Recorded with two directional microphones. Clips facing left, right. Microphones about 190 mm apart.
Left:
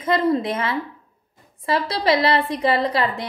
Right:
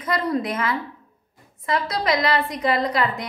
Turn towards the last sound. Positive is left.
turn(degrees=30)  # may be behind; listen again after turning